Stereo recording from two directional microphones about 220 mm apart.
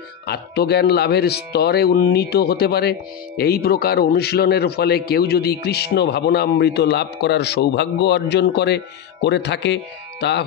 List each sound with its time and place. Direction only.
0.3 s speech: 45° left (ahead or behind)